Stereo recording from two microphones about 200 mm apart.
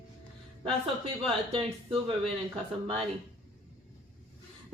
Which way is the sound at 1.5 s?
25° right (ahead or behind).